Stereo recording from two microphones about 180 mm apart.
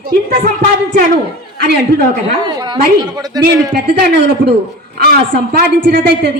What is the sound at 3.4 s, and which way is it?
A woman's voice, 60° right (ahead or behind).